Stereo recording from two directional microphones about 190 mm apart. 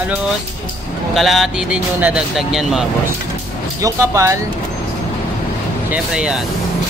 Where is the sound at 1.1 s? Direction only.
Centre (ahead or behind).